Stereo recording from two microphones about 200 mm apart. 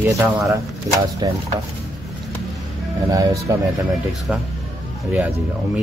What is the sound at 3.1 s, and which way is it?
Speech, 15° right (ahead or behind).